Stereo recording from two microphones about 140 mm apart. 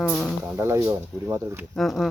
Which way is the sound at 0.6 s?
20° right (ahead or behind).